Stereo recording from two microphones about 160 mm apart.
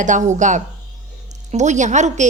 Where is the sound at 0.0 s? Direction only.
50° right (ahead or behind).